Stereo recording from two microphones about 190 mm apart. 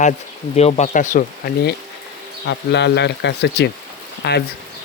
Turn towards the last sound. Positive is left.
turn(degrees=60)  # may be behind; listen again after turning